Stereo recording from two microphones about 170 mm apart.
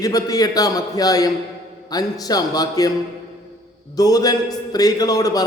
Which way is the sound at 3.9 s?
20° left (ahead or behind).